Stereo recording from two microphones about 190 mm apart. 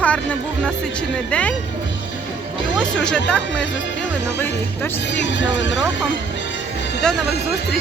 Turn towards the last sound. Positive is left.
turn(degrees=5)  # may be behind; listen again after turning